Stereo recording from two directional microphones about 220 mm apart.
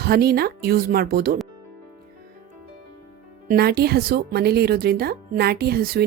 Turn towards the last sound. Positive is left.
turn(degrees=-45)  # may be behind; listen again after turning